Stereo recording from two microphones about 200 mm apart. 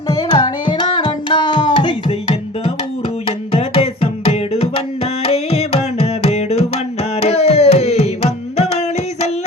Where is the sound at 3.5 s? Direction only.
30° left (ahead or behind).